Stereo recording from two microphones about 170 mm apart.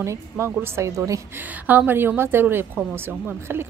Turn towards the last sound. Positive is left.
turn(degrees=-15)  # may be behind; listen again after turning